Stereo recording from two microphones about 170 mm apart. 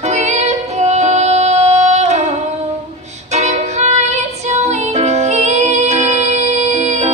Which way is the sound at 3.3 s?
40° right (ahead or behind).